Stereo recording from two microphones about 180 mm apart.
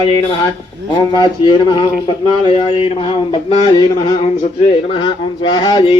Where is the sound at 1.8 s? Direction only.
30° left (ahead or behind).